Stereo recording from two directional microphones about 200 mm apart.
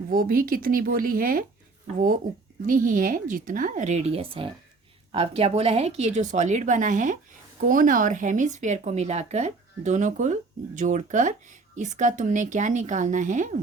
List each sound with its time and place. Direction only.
0.1 s speech: 45° right (ahead or behind)
2.6 s speech: 40° right (ahead or behind)